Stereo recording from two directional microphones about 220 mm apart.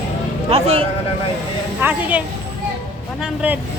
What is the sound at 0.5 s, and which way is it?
Speech, 25° right (ahead or behind).